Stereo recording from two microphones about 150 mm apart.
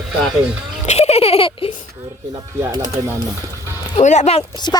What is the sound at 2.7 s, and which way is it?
Speech, 25° right (ahead or behind).